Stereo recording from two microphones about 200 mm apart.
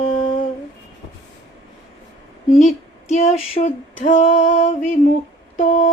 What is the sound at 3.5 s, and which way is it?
Music, 35° left (ahead or behind).